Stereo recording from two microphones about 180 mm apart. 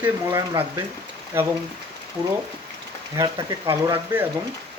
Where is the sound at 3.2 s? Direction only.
20° right (ahead or behind).